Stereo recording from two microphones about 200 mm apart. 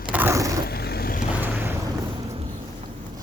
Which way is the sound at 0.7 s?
50° left (ahead or behind).